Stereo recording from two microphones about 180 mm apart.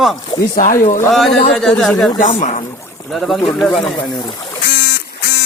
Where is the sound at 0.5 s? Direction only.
45° left (ahead or behind).